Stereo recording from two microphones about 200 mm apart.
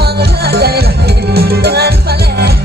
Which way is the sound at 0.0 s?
50° right (ahead or behind).